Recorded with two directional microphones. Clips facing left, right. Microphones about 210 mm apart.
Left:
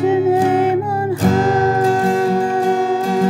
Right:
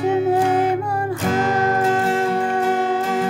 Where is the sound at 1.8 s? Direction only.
35° left (ahead or behind).